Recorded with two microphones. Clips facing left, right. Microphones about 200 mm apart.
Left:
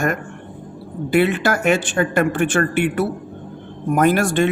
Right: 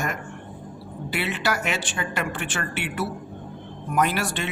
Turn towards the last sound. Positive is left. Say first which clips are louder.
# left 9 dB
turn(degrees=50)  # may be behind; listen again after turning